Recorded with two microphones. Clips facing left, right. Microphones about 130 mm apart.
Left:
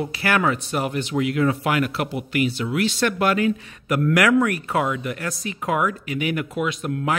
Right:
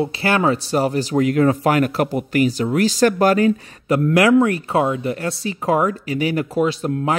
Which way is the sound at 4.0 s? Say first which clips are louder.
Right 4 dB; 25° right (ahead or behind).